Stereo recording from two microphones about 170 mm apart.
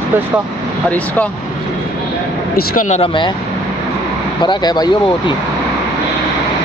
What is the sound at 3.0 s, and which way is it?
Speech, 30° left (ahead or behind).